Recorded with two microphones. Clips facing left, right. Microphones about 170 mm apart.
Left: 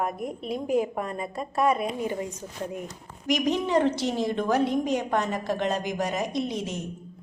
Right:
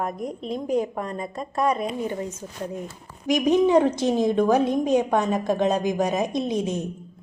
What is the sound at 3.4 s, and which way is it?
A woman's voice, 15° right (ahead or behind).